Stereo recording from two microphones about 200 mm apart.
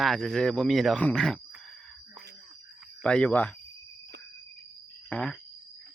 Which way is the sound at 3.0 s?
5° left (ahead or behind).